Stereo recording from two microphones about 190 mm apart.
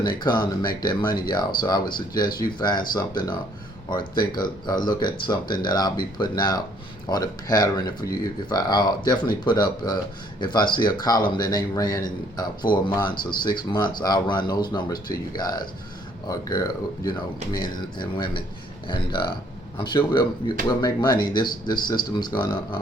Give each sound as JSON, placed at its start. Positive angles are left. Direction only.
{"t": 0.0, "sound": "speech", "side_deg": 20}
{"t": 4.6, "sound": "speech", "side_deg": 20}